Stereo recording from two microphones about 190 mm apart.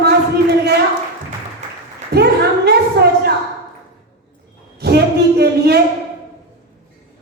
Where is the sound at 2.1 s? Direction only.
60° right (ahead or behind).